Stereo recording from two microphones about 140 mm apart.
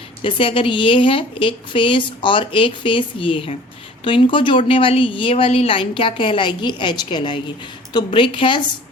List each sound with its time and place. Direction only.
0.2 s a woman's voice: 40° left (ahead or behind)